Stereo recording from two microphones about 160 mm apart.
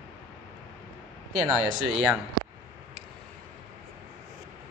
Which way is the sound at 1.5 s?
30° left (ahead or behind).